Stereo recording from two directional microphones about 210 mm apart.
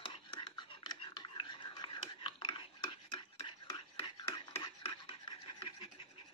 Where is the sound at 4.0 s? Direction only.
25° left (ahead or behind).